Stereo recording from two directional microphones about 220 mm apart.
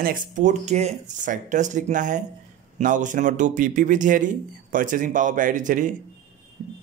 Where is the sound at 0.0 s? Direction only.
35° right (ahead or behind).